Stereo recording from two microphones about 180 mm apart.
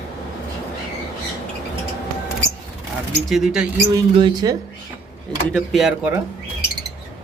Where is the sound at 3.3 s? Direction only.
Centre (ahead or behind).